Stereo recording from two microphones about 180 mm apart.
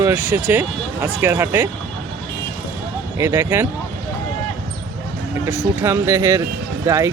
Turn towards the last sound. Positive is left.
turn(degrees=-15)  # may be behind; listen again after turning